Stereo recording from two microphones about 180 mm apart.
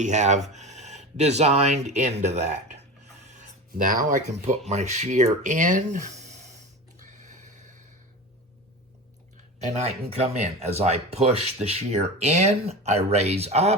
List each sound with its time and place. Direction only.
0.0 s speech: 40° right (ahead or behind)
7.0 s a sound: 45° right (ahead or behind)
9.6 s speech: 35° right (ahead or behind)